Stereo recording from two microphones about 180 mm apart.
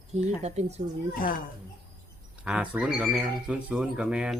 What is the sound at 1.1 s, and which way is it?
Speech, 50° left (ahead or behind).